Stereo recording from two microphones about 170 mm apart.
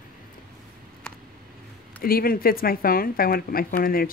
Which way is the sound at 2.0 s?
60° left (ahead or behind).